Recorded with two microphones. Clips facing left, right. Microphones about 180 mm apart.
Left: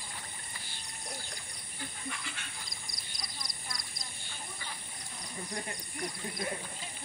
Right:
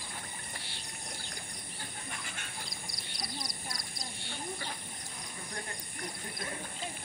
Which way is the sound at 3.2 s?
35° right (ahead or behind).